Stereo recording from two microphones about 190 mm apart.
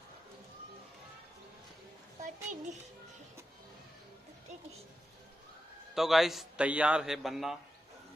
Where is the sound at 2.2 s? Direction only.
40° right (ahead or behind).